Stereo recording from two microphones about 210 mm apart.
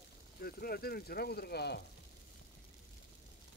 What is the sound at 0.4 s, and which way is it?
Speech, 45° left (ahead or behind).